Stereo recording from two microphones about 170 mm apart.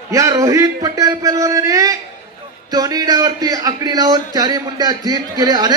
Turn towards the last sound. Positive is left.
turn(degrees=-25)  # may be behind; listen again after turning